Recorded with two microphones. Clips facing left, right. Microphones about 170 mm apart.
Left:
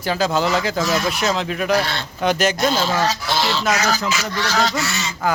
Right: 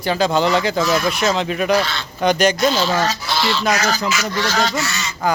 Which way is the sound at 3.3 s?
45° left (ahead or behind).